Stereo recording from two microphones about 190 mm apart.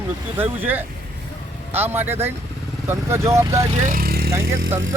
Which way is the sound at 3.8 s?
50° right (ahead or behind).